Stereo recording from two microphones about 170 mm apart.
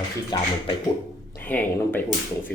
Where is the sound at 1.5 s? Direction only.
10° left (ahead or behind).